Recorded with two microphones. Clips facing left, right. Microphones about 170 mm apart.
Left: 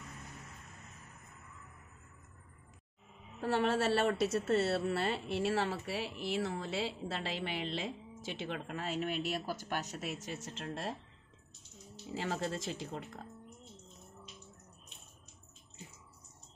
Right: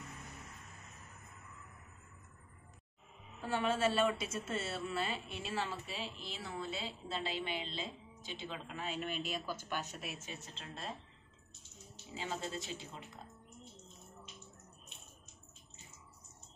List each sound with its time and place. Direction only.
3.3 s speech: 70° left (ahead or behind)
12.2 s speech: 90° left